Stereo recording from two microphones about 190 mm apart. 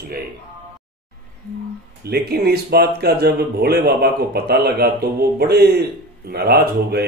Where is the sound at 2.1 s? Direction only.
55° right (ahead or behind).